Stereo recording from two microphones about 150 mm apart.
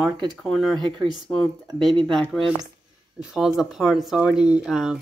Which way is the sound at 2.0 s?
5° left (ahead or behind).